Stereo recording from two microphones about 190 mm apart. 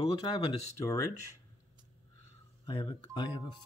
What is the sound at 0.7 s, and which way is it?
Speech, 15° left (ahead or behind).